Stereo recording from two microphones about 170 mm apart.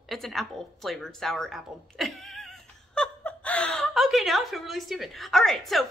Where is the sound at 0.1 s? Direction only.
Centre (ahead or behind).